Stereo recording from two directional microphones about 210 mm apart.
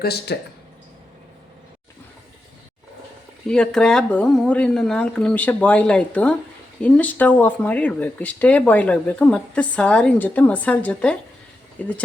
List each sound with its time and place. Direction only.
0.0 s speech: 50° left (ahead or behind)
3.4 s speech: 5° left (ahead or behind)